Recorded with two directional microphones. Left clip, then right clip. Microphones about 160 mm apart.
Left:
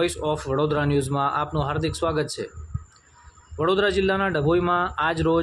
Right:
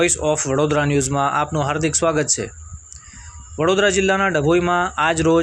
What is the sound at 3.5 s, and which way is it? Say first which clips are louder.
Speech: right 5 dB; 10° right (ahead or behind).